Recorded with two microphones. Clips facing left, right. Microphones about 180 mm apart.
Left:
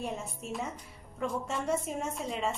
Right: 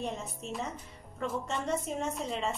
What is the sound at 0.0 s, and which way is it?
Speech, 5° left (ahead or behind).